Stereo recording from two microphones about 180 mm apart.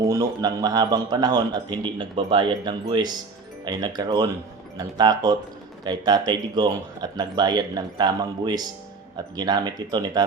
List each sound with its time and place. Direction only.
0.0 s a man's voice: 20° right (ahead or behind)